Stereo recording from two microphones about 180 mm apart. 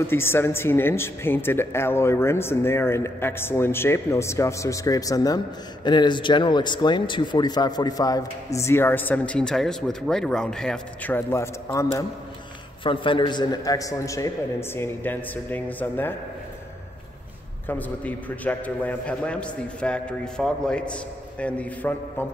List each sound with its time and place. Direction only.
0.0 s speech: 15° left (ahead or behind)
12.8 s speech: 30° left (ahead or behind); by 16.2 s 10° left (ahead or behind)
17.6 s speech: 10° left (ahead or behind)